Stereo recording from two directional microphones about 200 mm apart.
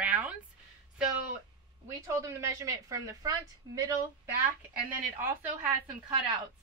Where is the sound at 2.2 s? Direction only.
15° right (ahead or behind).